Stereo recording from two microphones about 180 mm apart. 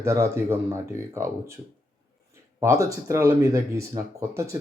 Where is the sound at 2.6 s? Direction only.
15° right (ahead or behind).